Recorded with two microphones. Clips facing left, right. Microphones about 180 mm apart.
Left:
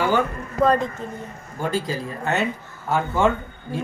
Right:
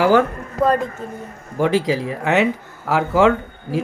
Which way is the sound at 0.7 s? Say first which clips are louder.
Right 2 dB; 10° right (ahead or behind).